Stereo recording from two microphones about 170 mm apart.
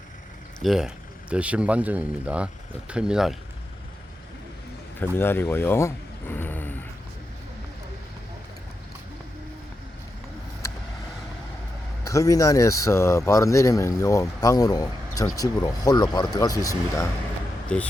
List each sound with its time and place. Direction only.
0.6 s speech: centre (ahead or behind)
4.9 s speech: 15° left (ahead or behind)
12.0 s speech: 20° left (ahead or behind)
17.7 s speech: 5° left (ahead or behind)